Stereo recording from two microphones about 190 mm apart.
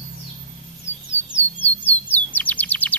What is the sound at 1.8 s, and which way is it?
Bird, 10° left (ahead or behind).